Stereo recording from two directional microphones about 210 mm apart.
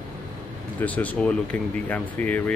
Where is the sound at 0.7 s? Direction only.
5° left (ahead or behind).